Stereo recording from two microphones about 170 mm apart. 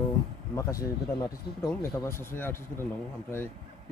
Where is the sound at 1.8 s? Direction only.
15° left (ahead or behind).